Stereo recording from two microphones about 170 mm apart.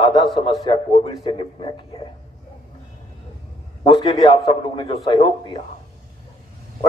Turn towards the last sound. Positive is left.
turn(degrees=25)  # may be behind; listen again after turning